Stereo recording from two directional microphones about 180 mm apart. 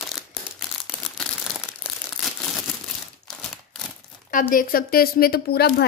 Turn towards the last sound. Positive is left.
turn(degrees=60)  # may be behind; listen again after turning